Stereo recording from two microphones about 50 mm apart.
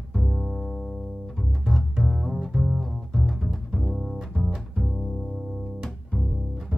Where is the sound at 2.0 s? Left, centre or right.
Centre.